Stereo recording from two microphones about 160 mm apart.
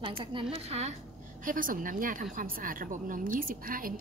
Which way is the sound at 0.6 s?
40° right (ahead or behind).